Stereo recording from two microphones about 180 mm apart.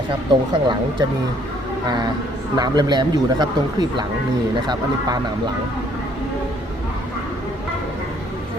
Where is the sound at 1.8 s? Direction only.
25° right (ahead or behind).